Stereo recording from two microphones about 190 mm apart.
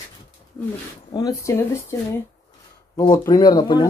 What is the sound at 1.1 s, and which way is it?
Speech, 15° left (ahead or behind).